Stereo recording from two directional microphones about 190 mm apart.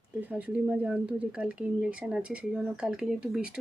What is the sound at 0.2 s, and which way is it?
Speech, 10° right (ahead or behind).